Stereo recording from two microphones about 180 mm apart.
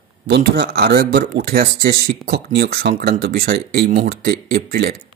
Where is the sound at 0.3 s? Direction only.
60° right (ahead or behind).